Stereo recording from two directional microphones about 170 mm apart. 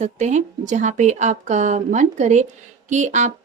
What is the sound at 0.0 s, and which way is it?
A woman's voice, 45° right (ahead or behind).